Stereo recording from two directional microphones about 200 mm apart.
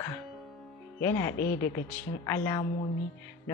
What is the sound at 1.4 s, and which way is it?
Speech, 50° left (ahead or behind).